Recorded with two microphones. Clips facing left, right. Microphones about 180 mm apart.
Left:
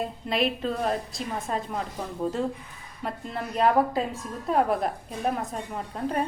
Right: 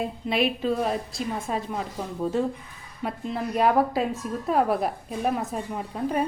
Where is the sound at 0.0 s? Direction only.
Centre (ahead or behind).